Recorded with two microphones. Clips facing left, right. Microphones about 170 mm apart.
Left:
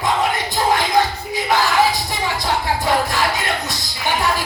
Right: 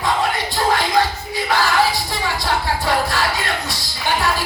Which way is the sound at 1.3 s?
20° left (ahead or behind).